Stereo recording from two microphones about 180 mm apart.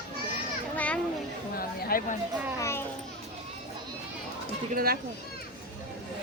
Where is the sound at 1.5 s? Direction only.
55° left (ahead or behind).